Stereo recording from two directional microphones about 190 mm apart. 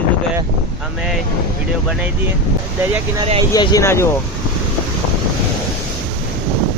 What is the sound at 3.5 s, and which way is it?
Speech, 20° left (ahead or behind).